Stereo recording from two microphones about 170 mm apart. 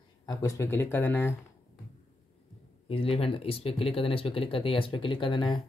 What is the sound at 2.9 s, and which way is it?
Speech, 35° left (ahead or behind).